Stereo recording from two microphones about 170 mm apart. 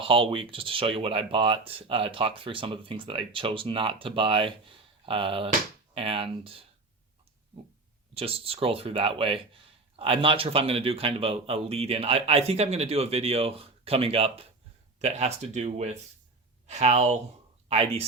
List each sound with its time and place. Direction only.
0.0 s speech: 30° right (ahead or behind)
8.1 s speech: 35° right (ahead or behind)